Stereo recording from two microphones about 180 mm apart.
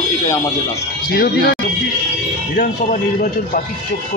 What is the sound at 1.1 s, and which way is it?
Speech, 60° left (ahead or behind).